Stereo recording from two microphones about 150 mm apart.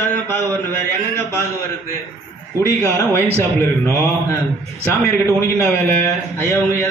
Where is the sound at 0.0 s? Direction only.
15° left (ahead or behind).